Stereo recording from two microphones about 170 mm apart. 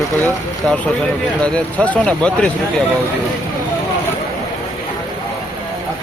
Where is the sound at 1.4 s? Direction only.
5° left (ahead or behind).